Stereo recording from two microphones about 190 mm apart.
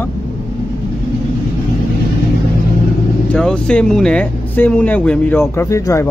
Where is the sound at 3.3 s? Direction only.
5° left (ahead or behind).